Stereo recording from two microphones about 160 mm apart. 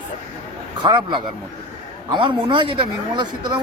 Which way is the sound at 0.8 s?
30° right (ahead or behind).